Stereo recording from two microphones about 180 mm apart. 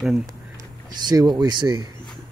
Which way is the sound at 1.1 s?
20° right (ahead or behind).